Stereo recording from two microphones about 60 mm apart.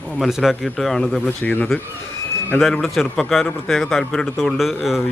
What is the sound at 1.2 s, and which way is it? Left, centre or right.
Speech, left.